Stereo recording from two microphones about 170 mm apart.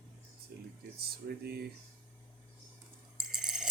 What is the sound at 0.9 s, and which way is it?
Speech, 65° right (ahead or behind).